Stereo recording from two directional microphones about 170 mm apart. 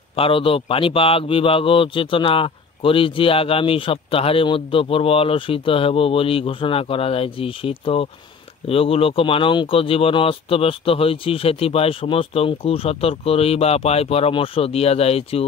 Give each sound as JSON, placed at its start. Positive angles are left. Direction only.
{"t": 0.1, "sound": "a man's voice", "side_deg": 30}